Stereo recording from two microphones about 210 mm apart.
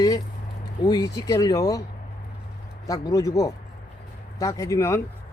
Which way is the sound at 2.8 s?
15° left (ahead or behind).